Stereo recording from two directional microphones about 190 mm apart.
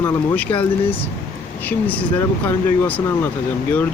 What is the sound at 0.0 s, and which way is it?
Speech, 10° left (ahead or behind).